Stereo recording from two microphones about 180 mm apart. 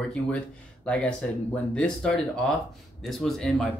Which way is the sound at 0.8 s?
5° left (ahead or behind).